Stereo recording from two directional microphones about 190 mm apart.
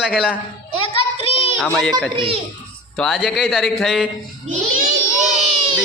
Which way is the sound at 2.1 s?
30° right (ahead or behind).